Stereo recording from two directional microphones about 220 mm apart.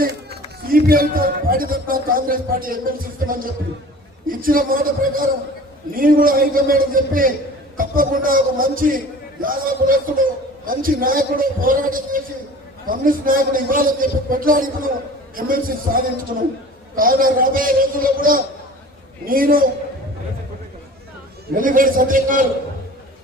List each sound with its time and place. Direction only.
0.0 s a man's voice: 45° right (ahead or behind)
21.5 s a man's voice: 40° right (ahead or behind)